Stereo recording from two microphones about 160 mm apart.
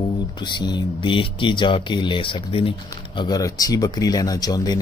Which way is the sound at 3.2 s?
25° left (ahead or behind).